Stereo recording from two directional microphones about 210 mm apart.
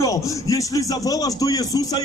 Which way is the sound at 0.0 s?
15° left (ahead or behind).